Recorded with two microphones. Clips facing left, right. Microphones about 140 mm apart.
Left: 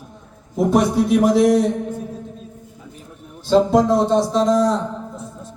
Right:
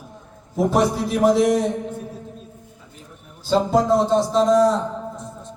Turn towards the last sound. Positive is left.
turn(degrees=0)  # may be behind; listen again after turning